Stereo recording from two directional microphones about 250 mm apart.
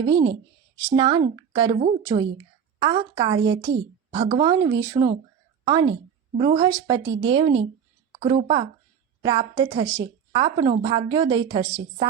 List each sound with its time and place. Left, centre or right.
0.0 s a woman's voice: centre